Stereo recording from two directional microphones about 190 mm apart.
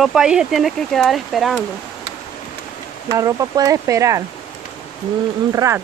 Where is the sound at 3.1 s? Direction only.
20° right (ahead or behind).